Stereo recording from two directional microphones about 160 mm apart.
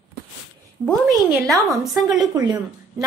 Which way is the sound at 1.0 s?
Centre (ahead or behind).